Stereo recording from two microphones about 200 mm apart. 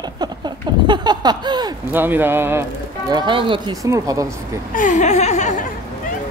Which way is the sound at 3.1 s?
20° right (ahead or behind).